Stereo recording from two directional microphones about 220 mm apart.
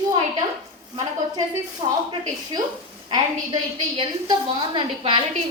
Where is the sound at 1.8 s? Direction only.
25° right (ahead or behind).